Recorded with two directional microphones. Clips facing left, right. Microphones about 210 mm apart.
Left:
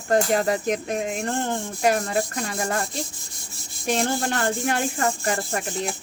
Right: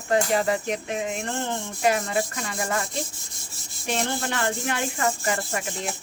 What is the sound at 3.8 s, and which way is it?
Rub, 40° left (ahead or behind).